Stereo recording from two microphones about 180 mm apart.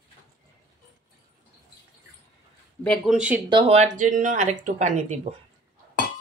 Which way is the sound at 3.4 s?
25° right (ahead or behind).